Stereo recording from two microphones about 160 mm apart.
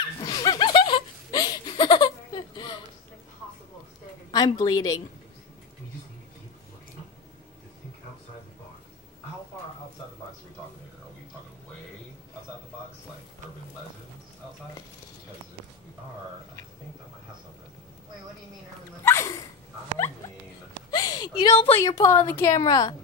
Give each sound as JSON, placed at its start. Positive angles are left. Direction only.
{"t": 0.2, "sound": "laughter", "side_deg": 25}
{"t": 4.3, "sound": "a woman's voice", "side_deg": 25}
{"t": 19.0, "sound": "a sound", "side_deg": 20}
{"t": 20.9, "sound": "a sound", "side_deg": 25}
{"t": 21.7, "sound": "a woman's voice", "side_deg": 20}
{"t": 22.7, "sound": "speech", "side_deg": 25}